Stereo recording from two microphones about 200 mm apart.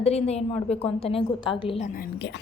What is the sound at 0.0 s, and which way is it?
A woman's voice, 30° left (ahead or behind).